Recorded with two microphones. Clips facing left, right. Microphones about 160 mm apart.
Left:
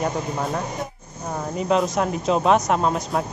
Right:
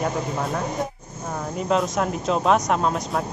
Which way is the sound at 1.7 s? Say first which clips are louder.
Left 1 dB; centre (ahead or behind).